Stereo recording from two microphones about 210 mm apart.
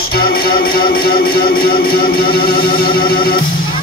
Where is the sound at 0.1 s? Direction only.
45° left (ahead or behind).